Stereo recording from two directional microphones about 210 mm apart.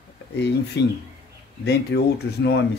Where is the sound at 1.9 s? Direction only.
55° left (ahead or behind).